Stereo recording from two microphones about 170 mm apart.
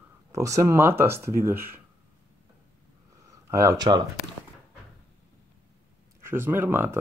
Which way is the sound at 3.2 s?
20° right (ahead or behind).